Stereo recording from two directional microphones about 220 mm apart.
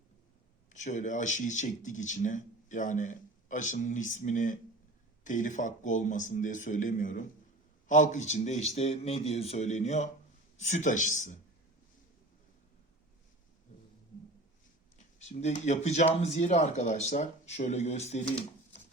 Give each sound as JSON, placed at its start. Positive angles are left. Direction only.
{"t": 0.7, "sound": "speech", "side_deg": 35}
{"t": 14.9, "sound": "speech", "side_deg": 30}